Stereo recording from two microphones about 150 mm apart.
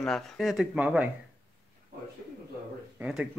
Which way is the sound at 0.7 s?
10° right (ahead or behind).